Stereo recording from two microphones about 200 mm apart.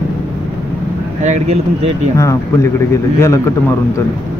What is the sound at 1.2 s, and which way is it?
Speech, 35° right (ahead or behind).